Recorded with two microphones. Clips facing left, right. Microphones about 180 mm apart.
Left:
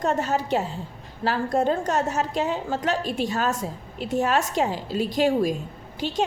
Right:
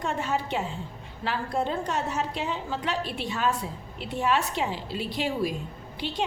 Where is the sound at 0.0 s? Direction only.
40° left (ahead or behind).